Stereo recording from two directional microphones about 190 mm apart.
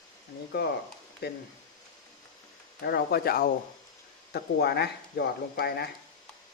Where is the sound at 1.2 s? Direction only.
60° left (ahead or behind).